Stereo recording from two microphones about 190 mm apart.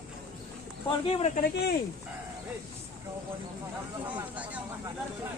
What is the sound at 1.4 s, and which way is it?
Speech, 55° left (ahead or behind).